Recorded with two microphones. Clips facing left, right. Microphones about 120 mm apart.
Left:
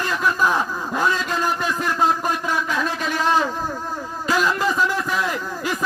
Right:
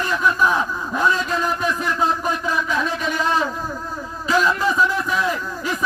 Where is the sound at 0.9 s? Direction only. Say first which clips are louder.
Right 2 dB; 35° left (ahead or behind).